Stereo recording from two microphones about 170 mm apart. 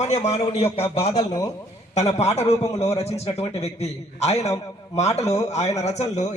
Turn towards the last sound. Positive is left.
turn(degrees=40)  # may be behind; listen again after turning